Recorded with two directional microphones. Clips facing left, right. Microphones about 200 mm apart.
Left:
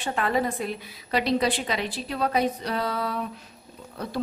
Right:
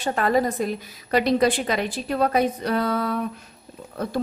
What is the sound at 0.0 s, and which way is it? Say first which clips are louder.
A woman's voice: right 4 dB; 40° right (ahead or behind).